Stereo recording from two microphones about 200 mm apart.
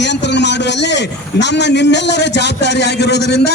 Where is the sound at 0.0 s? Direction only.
60° left (ahead or behind).